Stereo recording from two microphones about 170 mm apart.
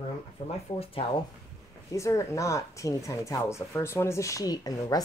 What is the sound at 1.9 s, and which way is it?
Speech, 15° left (ahead or behind).